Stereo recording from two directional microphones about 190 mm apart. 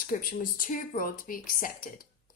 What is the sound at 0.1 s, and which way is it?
A woman's voice, 45° left (ahead or behind).